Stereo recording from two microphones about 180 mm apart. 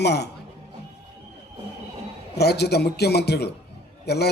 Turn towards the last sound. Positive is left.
turn(degrees=65)  # may be behind; listen again after turning